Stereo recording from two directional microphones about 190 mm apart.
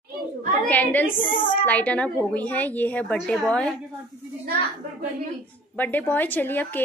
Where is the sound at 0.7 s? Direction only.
10° left (ahead or behind).